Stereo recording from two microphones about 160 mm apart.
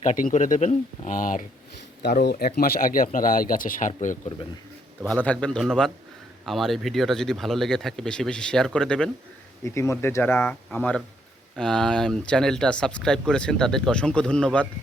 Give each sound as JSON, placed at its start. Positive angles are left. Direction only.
{"t": 0.0, "sound": "speech", "side_deg": 55}
{"t": 2.0, "sound": "speech", "side_deg": 90}
{"t": 5.0, "sound": "speech", "side_deg": 10}
{"t": 9.6, "sound": "speech", "side_deg": 20}